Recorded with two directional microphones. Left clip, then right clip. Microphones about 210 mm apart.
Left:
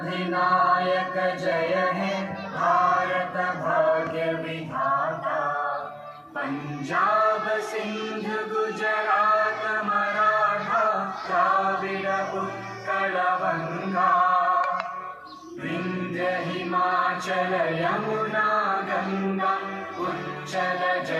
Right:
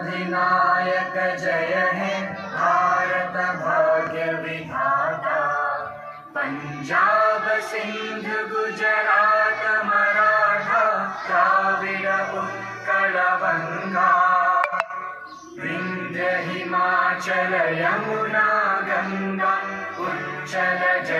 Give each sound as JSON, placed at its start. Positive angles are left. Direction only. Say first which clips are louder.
{"t": 0.2, "sound": "music", "louder": "right 2 dB", "side_deg": 0}
{"t": 4.8, "sound": "chant", "louder": "right 3 dB", "side_deg": -20}
{"t": 6.9, "sound": "music", "louder": "right 4 dB", "side_deg": -25}
{"t": 8.3, "sound": "chant", "louder": "right 3 dB", "side_deg": -25}
{"t": 16.1, "sound": "chant", "louder": "right 3 dB", "side_deg": -25}
{"t": 20.6, "sound": "music", "louder": "right 4 dB", "side_deg": -25}